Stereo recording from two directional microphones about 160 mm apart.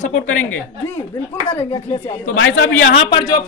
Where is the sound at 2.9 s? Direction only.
40° left (ahead or behind).